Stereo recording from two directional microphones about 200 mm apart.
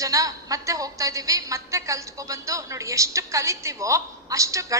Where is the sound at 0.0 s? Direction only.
15° right (ahead or behind).